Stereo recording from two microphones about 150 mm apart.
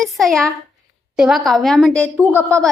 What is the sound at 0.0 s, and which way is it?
A woman's voice, centre (ahead or behind).